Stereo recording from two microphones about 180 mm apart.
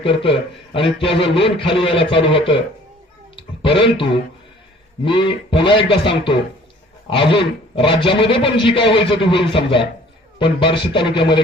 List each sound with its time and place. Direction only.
0.0 s a man's voice: 30° left (ahead or behind)
3.3 s a sound: 30° left (ahead or behind)
3.9 s a man's voice: 30° left (ahead or behind)